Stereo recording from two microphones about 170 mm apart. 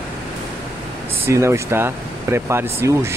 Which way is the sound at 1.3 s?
15° right (ahead or behind).